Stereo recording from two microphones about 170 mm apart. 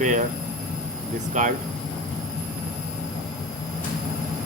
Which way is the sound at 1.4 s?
45° right (ahead or behind).